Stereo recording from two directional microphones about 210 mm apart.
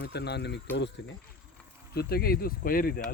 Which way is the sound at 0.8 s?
55° left (ahead or behind).